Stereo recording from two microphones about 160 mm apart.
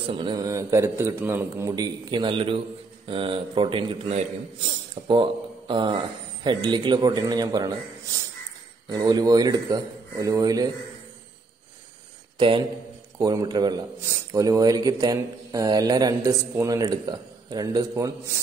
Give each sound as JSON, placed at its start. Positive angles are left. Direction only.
{"t": 0.2, "sound": "speech", "side_deg": -25}
{"t": 8.8, "sound": "speech", "side_deg": -25}
{"t": 12.4, "sound": "speech", "side_deg": -30}